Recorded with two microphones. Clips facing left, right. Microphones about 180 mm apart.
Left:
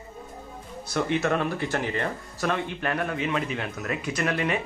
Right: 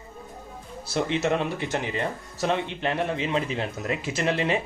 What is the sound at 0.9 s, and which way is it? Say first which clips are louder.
Speech: even; 20° right (ahead or behind).